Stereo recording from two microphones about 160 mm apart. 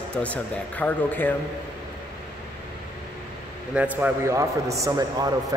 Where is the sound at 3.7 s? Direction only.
10° right (ahead or behind).